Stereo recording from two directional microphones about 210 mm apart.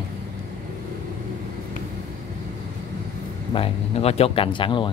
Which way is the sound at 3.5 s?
30° left (ahead or behind).